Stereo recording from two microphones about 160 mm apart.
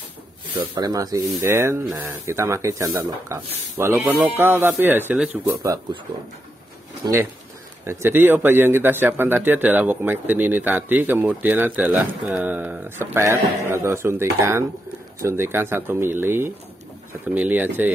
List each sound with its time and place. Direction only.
0.6 s a man's voice: 25° right (ahead or behind)
7.0 s speech: 25° right (ahead or behind)
7.8 s a man's voice: 15° right (ahead or behind)